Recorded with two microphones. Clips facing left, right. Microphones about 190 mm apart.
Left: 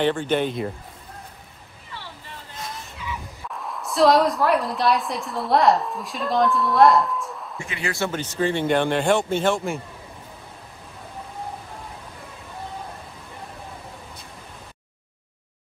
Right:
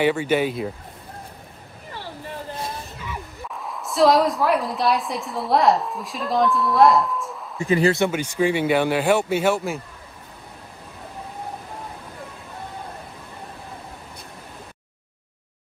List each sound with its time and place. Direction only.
0.0 s speech: 10° right (ahead or behind)
1.9 s vehicle: 45° right (ahead or behind)
3.5 s a woman's voice: centre (ahead or behind)
7.6 s speech: 35° right (ahead or behind)
8.1 s speech: 10° right (ahead or behind)